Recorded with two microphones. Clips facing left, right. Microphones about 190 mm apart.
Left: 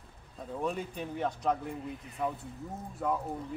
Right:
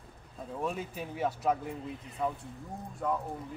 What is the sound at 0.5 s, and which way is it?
Speech, centre (ahead or behind).